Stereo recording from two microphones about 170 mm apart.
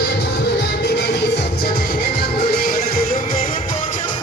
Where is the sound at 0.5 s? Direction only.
85° left.